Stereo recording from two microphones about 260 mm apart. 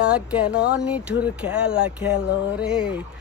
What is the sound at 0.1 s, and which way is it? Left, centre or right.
Speech, centre.